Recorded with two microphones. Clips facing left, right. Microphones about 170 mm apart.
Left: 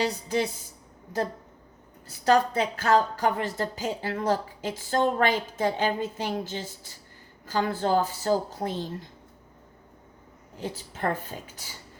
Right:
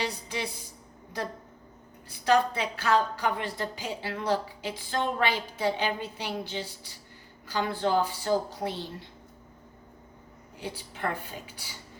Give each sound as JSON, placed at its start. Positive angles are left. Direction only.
{"t": 0.0, "sound": "a woman's voice", "side_deg": 40}
{"t": 2.0, "sound": "a woman's voice", "side_deg": 40}
{"t": 10.8, "sound": "a woman's voice", "side_deg": 45}